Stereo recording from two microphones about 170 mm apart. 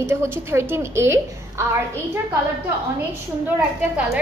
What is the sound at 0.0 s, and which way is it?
A woman's voice, 15° right (ahead or behind).